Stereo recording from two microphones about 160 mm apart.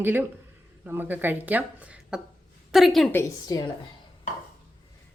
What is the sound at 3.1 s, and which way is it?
Speech, 15° left (ahead or behind).